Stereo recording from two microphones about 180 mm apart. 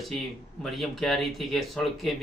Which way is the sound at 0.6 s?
Centre (ahead or behind).